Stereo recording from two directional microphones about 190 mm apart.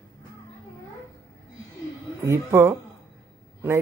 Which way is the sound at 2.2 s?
15° right (ahead or behind).